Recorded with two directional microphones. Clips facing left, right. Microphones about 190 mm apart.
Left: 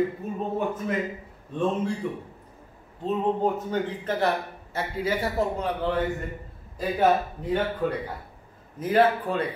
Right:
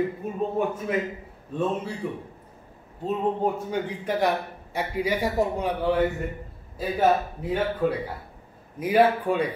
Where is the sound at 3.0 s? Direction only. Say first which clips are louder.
Even; 10° right (ahead or behind).